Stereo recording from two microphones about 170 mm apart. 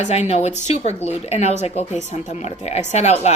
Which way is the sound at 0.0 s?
40° left (ahead or behind).